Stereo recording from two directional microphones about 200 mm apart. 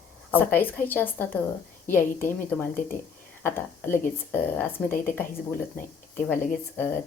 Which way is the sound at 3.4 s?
10° left (ahead or behind).